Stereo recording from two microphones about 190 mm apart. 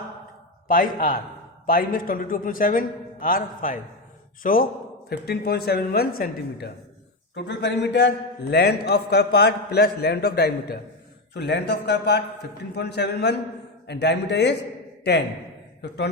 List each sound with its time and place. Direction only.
0.7 s a man's voice: 45° left (ahead or behind)
7.3 s a man's voice: 65° left (ahead or behind)